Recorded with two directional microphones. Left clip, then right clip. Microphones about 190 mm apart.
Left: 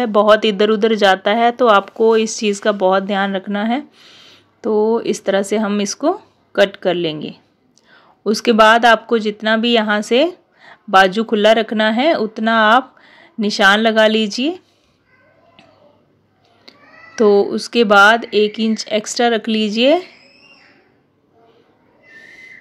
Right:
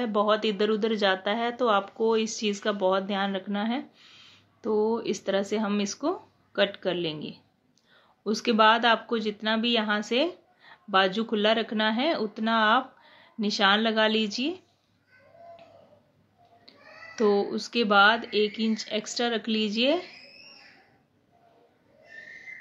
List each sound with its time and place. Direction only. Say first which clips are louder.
0.0 s speech: left 13 dB; 40° left (ahead or behind)
16.6 s speech: left 5 dB; 40° left (ahead or behind)